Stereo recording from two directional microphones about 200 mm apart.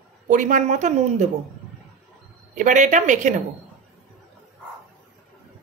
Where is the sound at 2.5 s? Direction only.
40° right (ahead or behind).